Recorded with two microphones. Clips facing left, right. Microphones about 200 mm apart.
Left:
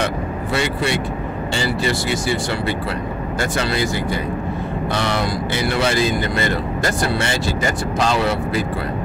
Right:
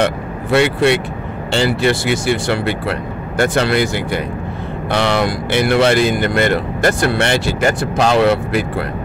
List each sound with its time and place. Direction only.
0.0 s speech: 60° right (ahead or behind)